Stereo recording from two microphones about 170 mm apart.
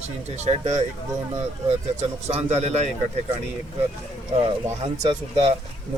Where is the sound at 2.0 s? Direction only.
40° right (ahead or behind).